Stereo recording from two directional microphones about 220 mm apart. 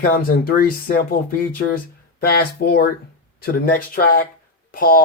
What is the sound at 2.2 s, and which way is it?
Speech, 45° left (ahead or behind).